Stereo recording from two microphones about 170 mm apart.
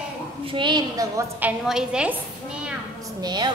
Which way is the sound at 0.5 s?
25° right (ahead or behind).